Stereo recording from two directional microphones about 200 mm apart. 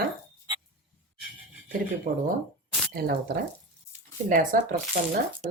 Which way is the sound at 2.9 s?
55° right (ahead or behind).